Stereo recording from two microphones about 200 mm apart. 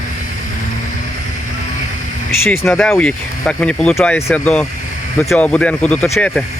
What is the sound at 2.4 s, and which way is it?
Speech, 10° left (ahead or behind).